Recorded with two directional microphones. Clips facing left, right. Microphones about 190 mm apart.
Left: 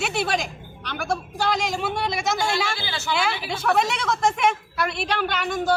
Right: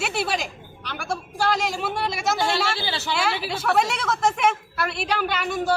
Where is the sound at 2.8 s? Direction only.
30° right (ahead or behind).